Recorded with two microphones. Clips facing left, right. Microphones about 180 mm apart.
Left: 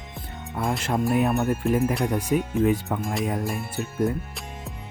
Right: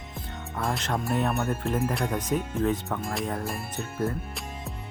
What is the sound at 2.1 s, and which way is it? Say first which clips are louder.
Speech: left 4 dB; 10° left (ahead or behind).